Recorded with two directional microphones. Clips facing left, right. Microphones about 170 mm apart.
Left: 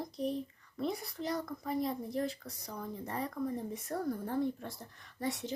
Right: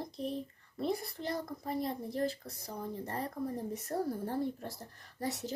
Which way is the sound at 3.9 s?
30° right (ahead or behind).